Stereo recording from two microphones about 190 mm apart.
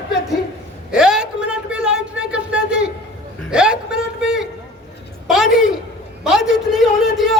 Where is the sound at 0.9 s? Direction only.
5° right (ahead or behind).